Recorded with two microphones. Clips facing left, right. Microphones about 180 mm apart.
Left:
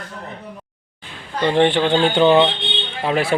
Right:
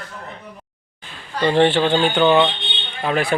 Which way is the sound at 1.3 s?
20° left (ahead or behind).